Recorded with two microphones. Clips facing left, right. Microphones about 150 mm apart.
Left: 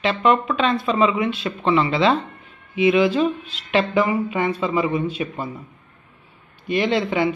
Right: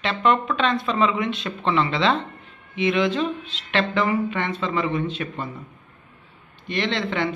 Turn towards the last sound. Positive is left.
turn(degrees=10)  # may be behind; listen again after turning